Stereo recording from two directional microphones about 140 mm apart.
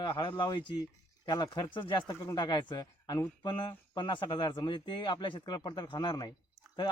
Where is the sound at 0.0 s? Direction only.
35° left (ahead or behind).